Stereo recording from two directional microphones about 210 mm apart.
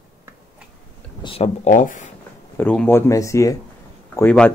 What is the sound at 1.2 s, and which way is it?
Speech, 25° left (ahead or behind).